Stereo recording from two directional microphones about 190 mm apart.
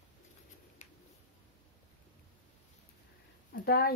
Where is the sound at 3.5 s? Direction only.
55° left (ahead or behind).